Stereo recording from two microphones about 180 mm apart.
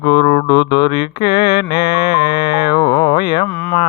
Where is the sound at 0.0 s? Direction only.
25° left (ahead or behind).